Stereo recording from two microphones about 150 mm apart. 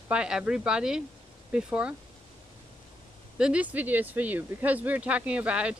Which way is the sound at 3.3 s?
5° right (ahead or behind).